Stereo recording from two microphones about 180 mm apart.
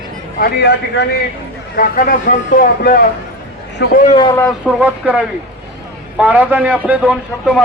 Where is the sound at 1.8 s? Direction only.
50° left (ahead or behind).